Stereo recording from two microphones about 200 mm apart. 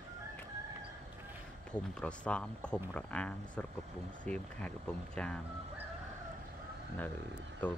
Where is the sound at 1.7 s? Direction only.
5° left (ahead or behind).